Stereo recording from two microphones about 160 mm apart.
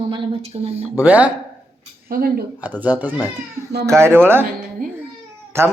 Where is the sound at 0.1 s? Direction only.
35° right (ahead or behind).